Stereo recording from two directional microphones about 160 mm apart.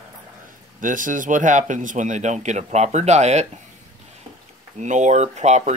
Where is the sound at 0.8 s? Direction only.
55° right (ahead or behind).